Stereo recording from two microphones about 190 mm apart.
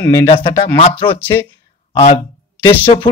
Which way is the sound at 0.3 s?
30° left (ahead or behind).